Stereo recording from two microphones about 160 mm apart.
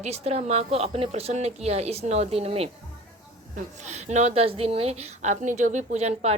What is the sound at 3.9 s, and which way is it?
A woman's voice, 45° right (ahead or behind).